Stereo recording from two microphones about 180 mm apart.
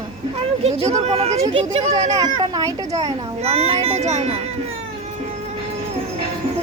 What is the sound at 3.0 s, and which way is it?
A child's voice, 35° right (ahead or behind).